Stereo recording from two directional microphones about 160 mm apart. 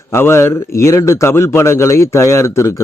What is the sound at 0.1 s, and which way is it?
A man's voice, 15° left (ahead or behind).